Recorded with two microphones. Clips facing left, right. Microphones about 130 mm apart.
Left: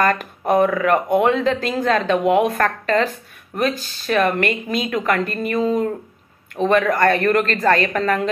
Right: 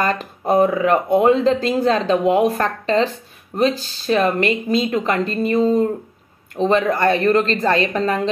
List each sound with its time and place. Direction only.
0.0 s speech: 30° right (ahead or behind)